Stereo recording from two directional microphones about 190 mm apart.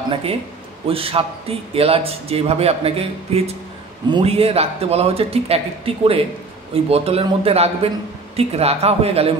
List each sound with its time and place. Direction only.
0.1 s a man's voice: 30° right (ahead or behind)
6.7 s a man's voice: 30° right (ahead or behind)